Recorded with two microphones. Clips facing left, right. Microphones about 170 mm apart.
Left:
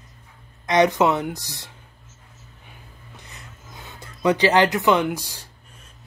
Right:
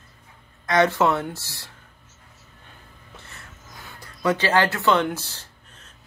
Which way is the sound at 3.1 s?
15° left (ahead or behind).